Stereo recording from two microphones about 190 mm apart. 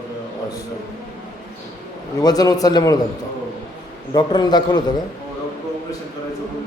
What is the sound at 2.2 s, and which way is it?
Speech, 20° left (ahead or behind).